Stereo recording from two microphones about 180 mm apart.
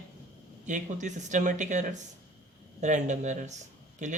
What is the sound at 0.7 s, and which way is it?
Speech, 45° right (ahead or behind).